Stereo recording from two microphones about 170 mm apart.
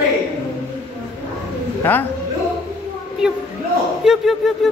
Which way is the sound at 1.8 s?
10° left (ahead or behind).